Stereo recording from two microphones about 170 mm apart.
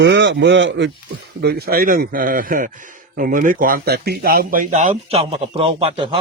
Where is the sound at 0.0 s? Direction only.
90° right.